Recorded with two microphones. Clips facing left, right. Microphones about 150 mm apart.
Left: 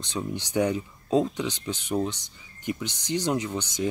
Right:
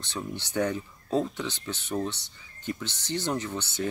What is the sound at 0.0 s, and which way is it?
Speech, 15° left (ahead or behind).